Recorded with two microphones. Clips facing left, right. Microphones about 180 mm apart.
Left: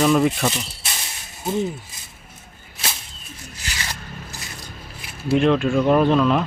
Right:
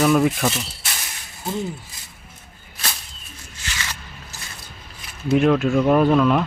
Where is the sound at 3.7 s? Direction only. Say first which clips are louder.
Even; 35° left (ahead or behind).